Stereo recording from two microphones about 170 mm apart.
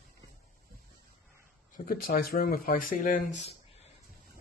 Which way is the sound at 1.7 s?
55° left (ahead or behind).